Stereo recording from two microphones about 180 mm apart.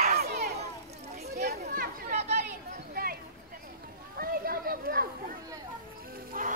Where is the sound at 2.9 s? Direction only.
55° right (ahead or behind).